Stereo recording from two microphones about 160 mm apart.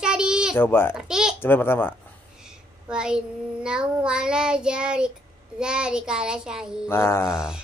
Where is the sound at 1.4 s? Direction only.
15° left (ahead or behind).